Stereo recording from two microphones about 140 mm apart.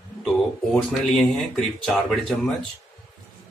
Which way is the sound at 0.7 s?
Centre (ahead or behind).